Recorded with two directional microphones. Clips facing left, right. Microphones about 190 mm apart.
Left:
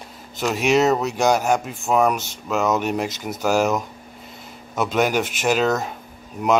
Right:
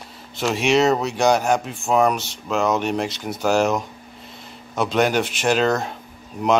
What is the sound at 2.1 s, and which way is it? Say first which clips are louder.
Speech: even; 45° left (ahead or behind).